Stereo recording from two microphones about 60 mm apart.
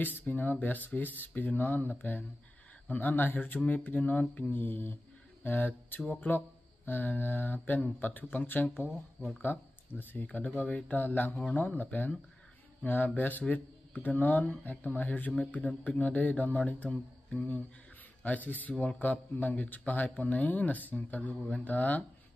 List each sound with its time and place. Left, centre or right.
0.2 s a man's voice: left
18.2 s a man's voice: left